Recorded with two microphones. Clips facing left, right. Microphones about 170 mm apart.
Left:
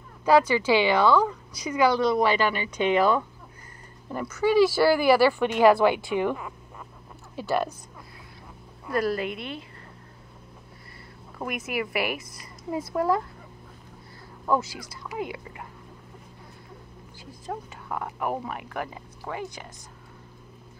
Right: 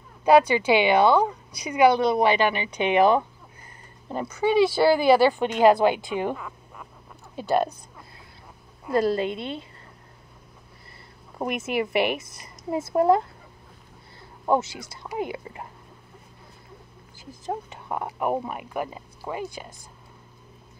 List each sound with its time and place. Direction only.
0.2 s a woman's voice: 15° right (ahead or behind)
1.9 s a woman's voice: 60° right (ahead or behind)
2.1 s speech: 20° right (ahead or behind)
7.3 s speech: 20° right (ahead or behind)
8.8 s speech: 25° right (ahead or behind)
11.3 s speech: 25° right (ahead or behind)
14.4 s speech: 25° right (ahead or behind)
17.5 s speech: 20° right (ahead or behind)